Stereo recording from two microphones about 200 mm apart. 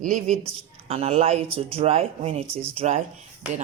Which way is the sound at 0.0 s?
35° right (ahead or behind).